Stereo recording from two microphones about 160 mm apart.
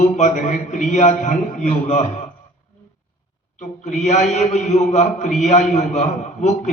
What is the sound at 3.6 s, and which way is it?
A man's voice, 45° left (ahead or behind).